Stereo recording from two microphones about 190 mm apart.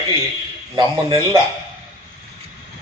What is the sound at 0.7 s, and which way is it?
Speech, 25° right (ahead or behind).